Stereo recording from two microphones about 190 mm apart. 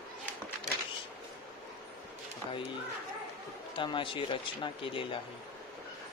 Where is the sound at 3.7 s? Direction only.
25° left (ahead or behind).